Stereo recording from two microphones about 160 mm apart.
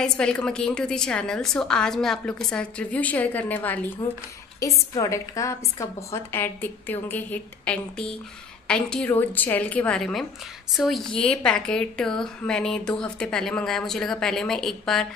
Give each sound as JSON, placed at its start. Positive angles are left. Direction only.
{"t": 0.0, "sound": "a woman's voice", "side_deg": 5}